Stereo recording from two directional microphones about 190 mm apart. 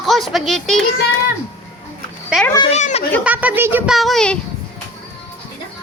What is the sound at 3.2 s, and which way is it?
Speech, 10° right (ahead or behind).